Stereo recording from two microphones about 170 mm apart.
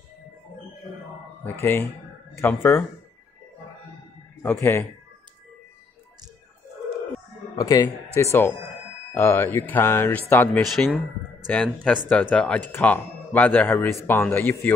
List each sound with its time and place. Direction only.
1.4 s speech: 15° left (ahead or behind)
4.4 s speech: 15° left (ahead or behind)
7.5 s speech: 20° left (ahead or behind)
10.7 s speech: centre (ahead or behind)